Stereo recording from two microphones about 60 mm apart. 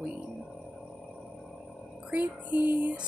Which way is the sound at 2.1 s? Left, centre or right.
Right.